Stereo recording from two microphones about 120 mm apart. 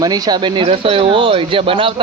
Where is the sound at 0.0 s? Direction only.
30° right (ahead or behind).